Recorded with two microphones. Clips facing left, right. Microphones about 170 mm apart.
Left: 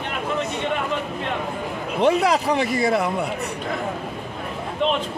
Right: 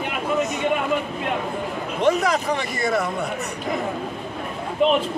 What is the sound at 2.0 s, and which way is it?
Speech, 30° left (ahead or behind).